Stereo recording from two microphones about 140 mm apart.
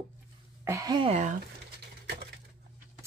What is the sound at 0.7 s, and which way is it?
Speech, 25° right (ahead or behind).